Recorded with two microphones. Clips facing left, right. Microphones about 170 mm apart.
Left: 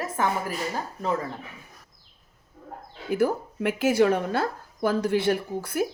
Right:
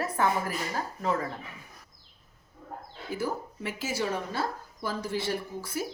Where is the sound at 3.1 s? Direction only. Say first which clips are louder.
Left 8 dB; 60° left (ahead or behind).